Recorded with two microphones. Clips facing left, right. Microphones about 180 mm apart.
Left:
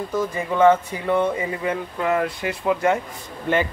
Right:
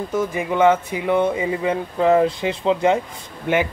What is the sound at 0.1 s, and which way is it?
Speech, 15° right (ahead or behind).